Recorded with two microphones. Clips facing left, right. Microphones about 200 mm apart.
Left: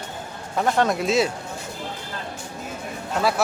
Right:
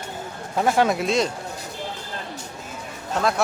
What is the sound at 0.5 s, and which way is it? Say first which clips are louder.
Speech: right 1 dB; 5° right (ahead or behind).